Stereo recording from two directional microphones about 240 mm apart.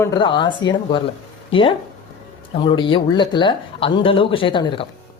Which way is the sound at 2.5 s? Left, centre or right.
Centre.